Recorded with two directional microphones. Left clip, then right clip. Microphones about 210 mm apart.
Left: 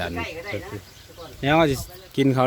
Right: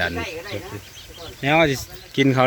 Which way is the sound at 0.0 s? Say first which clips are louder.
Right 5 dB; centre (ahead or behind).